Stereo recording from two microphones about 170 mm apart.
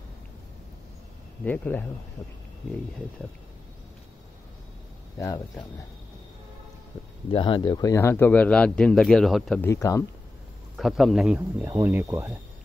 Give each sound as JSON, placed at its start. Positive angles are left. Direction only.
{"t": 1.4, "sound": "speech", "side_deg": 10}
{"t": 5.2, "sound": "speech", "side_deg": 25}
{"t": 7.2, "sound": "speech", "side_deg": 30}
{"t": 9.6, "sound": "speech", "side_deg": 20}
{"t": 10.8, "sound": "speech", "side_deg": 0}